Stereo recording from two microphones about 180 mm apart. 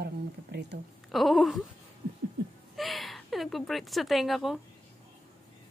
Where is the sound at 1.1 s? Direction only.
Centre (ahead or behind).